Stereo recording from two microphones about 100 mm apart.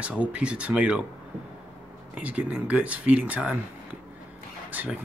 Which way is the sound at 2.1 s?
15° right (ahead or behind).